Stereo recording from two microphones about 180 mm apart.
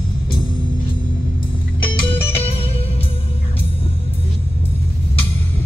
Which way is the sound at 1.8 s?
30° left (ahead or behind).